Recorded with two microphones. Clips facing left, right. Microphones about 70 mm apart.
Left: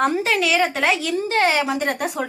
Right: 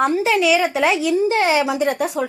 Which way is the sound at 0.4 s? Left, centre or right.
Centre.